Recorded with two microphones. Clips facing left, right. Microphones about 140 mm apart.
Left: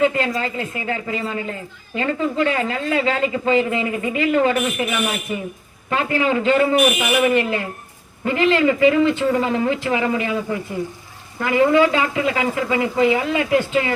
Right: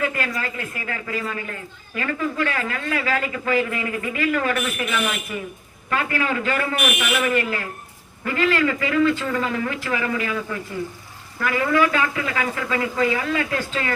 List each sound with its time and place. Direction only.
0.0 s speech: 25° left (ahead or behind)